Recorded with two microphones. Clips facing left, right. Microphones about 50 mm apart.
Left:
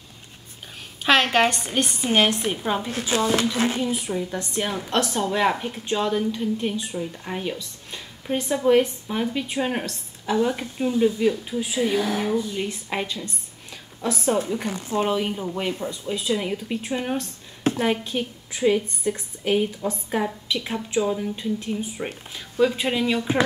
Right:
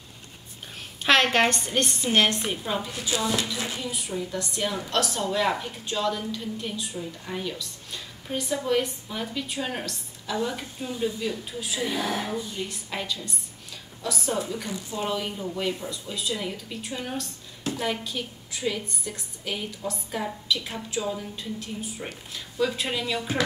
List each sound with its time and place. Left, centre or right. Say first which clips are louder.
1.0 s a woman's voice: left 2 dB; centre; by 2.9 s left
2.9 s speech: left 7 dB; left
3.9 s a woman's voice: left 4 dB; left
15.0 s a woman's voice: left 5 dB; left